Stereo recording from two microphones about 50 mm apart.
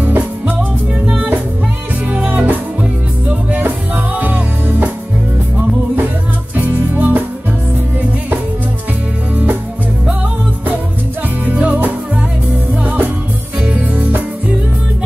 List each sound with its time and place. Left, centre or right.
0.0 s music: right
0.6 s music: right
3.6 s music: right
6.5 s music: right
11.4 s music: right